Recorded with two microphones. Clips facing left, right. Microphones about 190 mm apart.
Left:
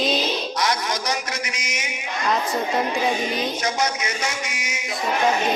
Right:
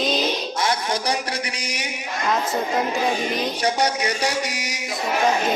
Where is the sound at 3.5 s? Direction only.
35° right (ahead or behind).